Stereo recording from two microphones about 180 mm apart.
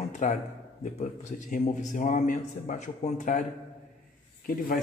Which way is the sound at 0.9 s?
40° left (ahead or behind).